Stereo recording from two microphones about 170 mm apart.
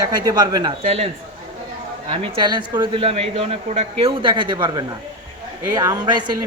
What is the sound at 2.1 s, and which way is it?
Speech, 30° right (ahead or behind).